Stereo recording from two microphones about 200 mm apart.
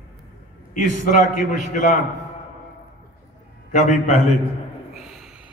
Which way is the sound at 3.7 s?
35° left (ahead or behind).